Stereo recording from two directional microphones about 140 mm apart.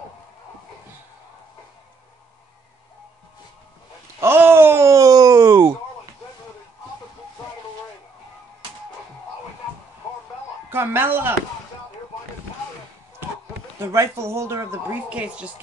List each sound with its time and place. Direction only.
4.2 s groan: 15° right (ahead or behind)
10.7 s speech: 15° right (ahead or behind)
13.7 s speech: 20° right (ahead or behind)
15.0 s speech: 10° right (ahead or behind)